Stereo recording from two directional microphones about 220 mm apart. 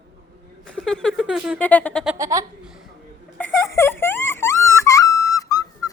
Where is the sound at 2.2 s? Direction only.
15° right (ahead or behind).